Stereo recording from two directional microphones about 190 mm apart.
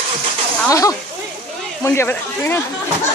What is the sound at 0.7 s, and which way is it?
Speech, 15° left (ahead or behind).